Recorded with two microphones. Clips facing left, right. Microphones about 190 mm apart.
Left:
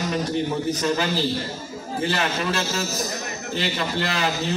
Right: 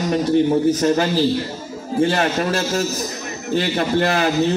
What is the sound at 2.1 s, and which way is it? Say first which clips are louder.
A man's voice: right 5 dB; 45° right (ahead or behind).